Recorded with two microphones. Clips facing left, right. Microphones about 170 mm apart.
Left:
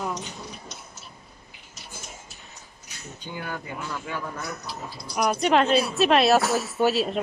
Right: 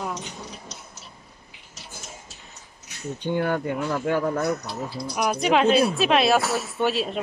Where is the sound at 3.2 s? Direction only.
65° right (ahead or behind).